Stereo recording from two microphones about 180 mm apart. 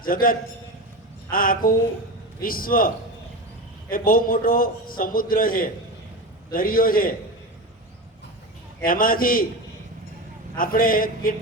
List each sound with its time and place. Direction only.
0.0 s a man's voice: 50° left (ahead or behind)
8.8 s a man's voice: 50° left (ahead or behind)
10.6 s a man's voice: 50° left (ahead or behind)